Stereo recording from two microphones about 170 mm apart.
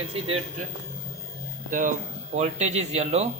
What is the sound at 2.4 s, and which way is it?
Speech, 40° right (ahead or behind).